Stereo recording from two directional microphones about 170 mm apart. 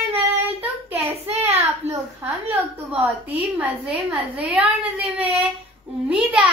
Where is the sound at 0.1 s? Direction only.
10° right (ahead or behind).